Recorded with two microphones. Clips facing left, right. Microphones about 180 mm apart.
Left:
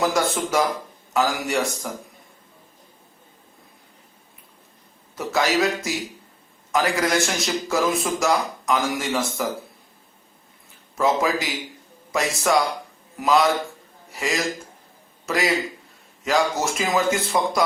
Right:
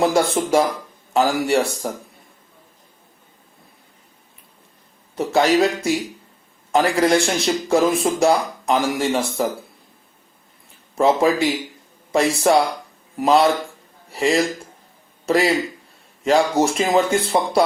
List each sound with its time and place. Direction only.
0.0 s a man's voice: 30° right (ahead or behind)
5.1 s a man's voice: 30° right (ahead or behind)
10.9 s a man's voice: 30° right (ahead or behind)